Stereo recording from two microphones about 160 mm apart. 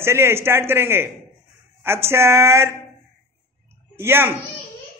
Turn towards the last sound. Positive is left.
turn(degrees=-15)  # may be behind; listen again after turning